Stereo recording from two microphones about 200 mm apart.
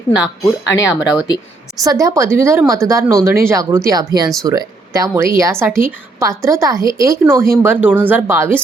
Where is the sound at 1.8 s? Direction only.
15° right (ahead or behind).